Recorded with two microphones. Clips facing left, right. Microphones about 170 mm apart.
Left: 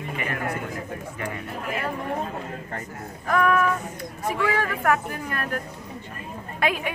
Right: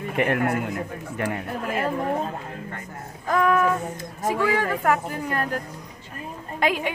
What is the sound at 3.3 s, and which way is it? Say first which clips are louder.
A woman's voice: right 1 dB; 25° right (ahead or behind).